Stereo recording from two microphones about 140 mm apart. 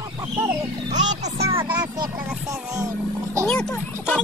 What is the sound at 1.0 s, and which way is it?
Speech, 55° right (ahead or behind).